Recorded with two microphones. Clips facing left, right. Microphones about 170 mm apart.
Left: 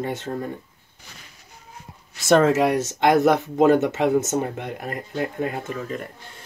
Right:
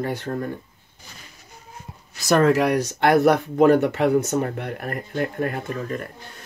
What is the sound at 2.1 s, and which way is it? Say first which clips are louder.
Speech: left 1 dB; 25° left (ahead or behind).